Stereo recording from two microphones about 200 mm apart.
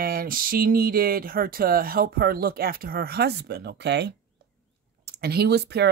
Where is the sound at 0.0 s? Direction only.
50° right (ahead or behind).